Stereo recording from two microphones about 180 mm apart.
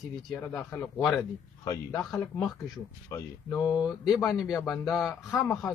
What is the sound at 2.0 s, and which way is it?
Speech, centre (ahead or behind).